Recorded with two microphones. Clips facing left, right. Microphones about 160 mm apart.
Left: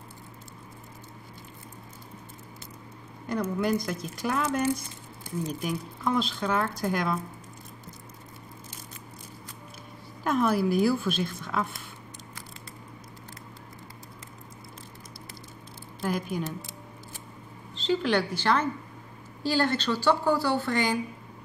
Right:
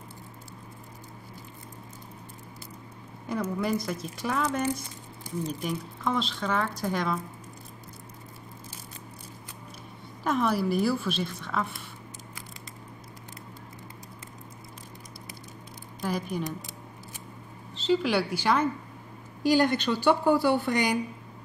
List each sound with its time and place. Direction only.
3.3 s speech: centre (ahead or behind)
5.5 s speech: 5° left (ahead or behind)
10.2 s speech: centre (ahead or behind)
16.0 s speech: centre (ahead or behind)
17.7 s speech: 5° right (ahead or behind)